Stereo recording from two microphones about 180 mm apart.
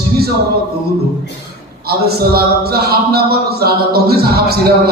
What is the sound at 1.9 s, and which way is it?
A man's voice, 60° right (ahead or behind).